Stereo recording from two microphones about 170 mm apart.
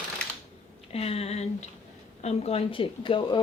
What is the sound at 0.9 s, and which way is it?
Speech, 35° left (ahead or behind).